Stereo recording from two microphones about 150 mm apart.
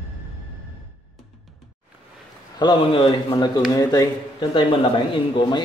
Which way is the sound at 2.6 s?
35° left (ahead or behind).